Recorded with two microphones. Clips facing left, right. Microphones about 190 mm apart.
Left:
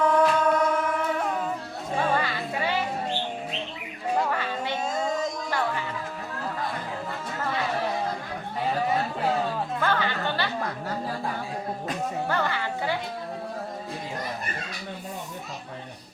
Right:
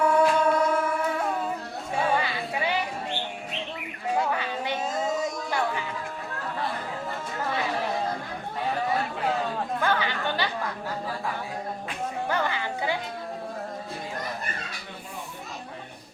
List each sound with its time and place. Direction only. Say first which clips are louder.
0.0 s music: even; 10° right (ahead or behind)
2.0 s music: right 1 dB; 10° right (ahead or behind)
4.2 s a sound: even; 15° right (ahead or behind)
4.9 s music: even; 5° right (ahead or behind)
9.8 s chatter: left 1 dB; 15° right (ahead or behind)
12.3 s music: right 1 dB; 15° right (ahead or behind)